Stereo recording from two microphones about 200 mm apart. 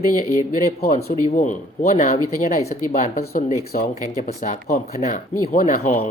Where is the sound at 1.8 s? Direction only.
35° left (ahead or behind).